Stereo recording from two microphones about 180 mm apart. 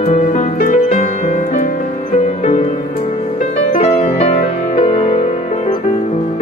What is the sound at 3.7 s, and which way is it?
Music, 35° left (ahead or behind).